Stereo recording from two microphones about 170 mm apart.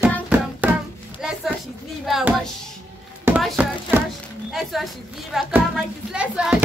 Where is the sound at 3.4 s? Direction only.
5° right (ahead or behind).